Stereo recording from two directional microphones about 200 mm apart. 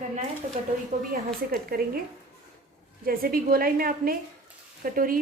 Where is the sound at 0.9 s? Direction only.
40° right (ahead or behind).